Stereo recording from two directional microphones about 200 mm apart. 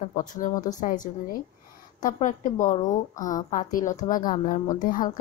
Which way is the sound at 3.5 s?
40° left (ahead or behind).